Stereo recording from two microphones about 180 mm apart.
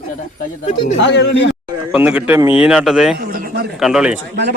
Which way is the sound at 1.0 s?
80° left.